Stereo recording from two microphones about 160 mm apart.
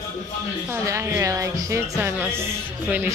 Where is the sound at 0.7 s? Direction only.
15° right (ahead or behind).